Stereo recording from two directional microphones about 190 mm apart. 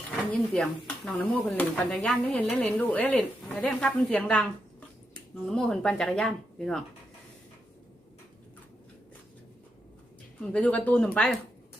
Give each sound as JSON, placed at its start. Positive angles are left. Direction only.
{"t": 0.3, "sound": "speech", "side_deg": 5}
{"t": 5.5, "sound": "speech", "side_deg": 5}
{"t": 10.4, "sound": "speech", "side_deg": 5}